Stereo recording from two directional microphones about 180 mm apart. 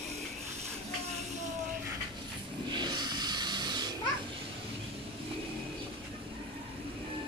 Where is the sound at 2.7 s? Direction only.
25° right (ahead or behind).